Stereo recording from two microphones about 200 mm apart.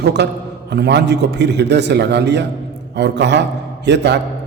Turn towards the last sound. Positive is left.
turn(degrees=-60)  # may be behind; listen again after turning